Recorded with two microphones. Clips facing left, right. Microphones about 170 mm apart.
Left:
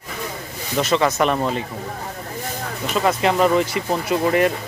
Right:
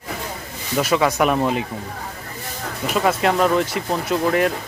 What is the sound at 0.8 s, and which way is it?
Speech, 10° right (ahead or behind).